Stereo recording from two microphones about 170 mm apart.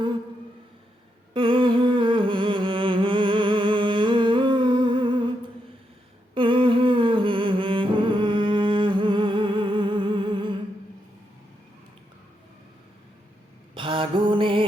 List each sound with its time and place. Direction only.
1.3 s humming: 30° right (ahead or behind)
6.3 s humming: 30° right (ahead or behind)
13.7 s music: 30° right (ahead or behind)